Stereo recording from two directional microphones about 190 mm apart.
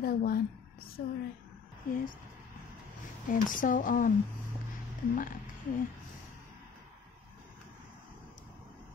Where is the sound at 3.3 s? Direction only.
45° left (ahead or behind).